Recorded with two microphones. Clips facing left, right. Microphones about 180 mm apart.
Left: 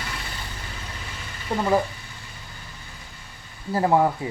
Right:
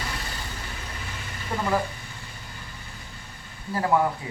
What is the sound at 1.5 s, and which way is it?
Speech, 20° left (ahead or behind).